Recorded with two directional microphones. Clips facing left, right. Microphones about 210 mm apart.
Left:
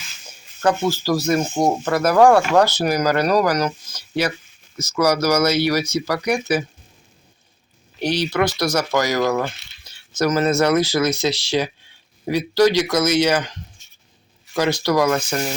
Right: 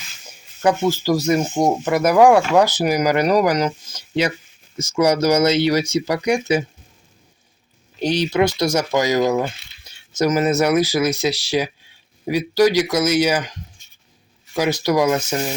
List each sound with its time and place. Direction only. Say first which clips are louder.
0.6 s speech: right 2 dB; 15° right (ahead or behind)
1.5 s speech: right 1 dB; centre (ahead or behind)
1.8 s speech: right 1 dB; 15° right (ahead or behind)
8.0 s speech: right 2 dB; 20° right (ahead or behind)
14.5 s speech: even; 15° right (ahead or behind)